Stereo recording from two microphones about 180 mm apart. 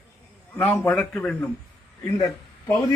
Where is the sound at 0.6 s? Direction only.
10° left (ahead or behind).